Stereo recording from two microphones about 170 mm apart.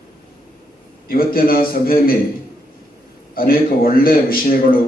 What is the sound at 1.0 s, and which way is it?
A man's voice, 60° left (ahead or behind).